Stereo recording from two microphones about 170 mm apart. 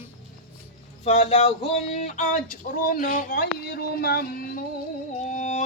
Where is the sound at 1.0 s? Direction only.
40° left (ahead or behind).